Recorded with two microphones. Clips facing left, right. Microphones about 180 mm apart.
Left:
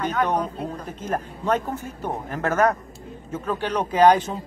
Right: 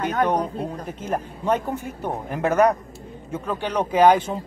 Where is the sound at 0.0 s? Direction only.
55° right (ahead or behind).